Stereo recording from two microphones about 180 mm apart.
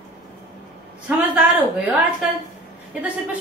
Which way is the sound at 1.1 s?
10° right (ahead or behind).